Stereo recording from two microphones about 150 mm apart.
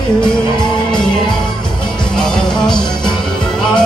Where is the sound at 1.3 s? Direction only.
5° left (ahead or behind).